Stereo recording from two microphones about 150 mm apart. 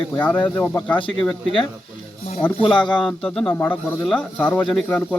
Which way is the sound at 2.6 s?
35° left (ahead or behind).